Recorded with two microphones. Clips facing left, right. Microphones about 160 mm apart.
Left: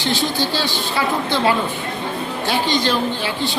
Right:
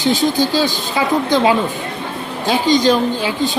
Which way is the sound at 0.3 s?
45° right (ahead or behind).